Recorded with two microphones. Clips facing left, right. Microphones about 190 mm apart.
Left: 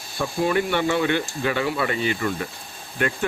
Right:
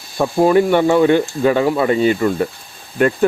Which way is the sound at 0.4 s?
45° right (ahead or behind).